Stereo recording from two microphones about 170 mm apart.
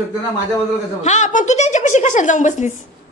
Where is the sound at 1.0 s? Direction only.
45° left (ahead or behind).